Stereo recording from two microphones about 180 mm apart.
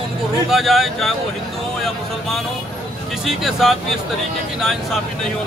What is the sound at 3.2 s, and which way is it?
Speech, centre (ahead or behind).